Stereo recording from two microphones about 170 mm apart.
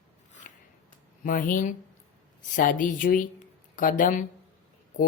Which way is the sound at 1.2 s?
50° left (ahead or behind).